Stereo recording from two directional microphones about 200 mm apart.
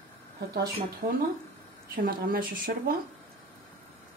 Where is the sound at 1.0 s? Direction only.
45° right (ahead or behind).